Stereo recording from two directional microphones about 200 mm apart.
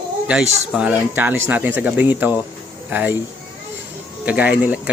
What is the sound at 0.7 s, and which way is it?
Speech, 5° right (ahead or behind).